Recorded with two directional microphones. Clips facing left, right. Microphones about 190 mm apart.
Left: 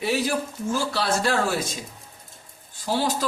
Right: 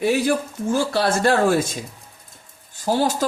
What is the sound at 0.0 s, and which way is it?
Speech, 50° right (ahead or behind).